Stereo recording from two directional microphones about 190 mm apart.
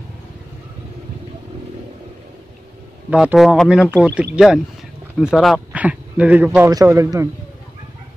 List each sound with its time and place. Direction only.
3.1 s speech: 5° right (ahead or behind)